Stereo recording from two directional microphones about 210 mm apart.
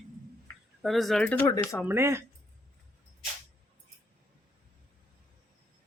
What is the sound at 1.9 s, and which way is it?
Speech, 10° right (ahead or behind).